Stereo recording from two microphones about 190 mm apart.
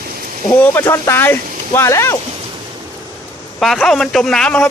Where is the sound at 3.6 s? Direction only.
Centre (ahead or behind).